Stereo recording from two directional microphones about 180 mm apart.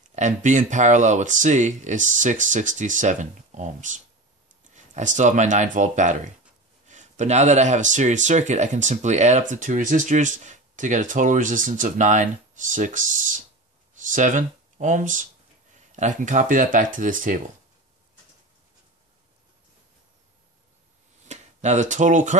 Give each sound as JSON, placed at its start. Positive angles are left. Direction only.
{"t": 0.1, "sound": "speech", "side_deg": -40}
{"t": 21.3, "sound": "speech", "side_deg": -40}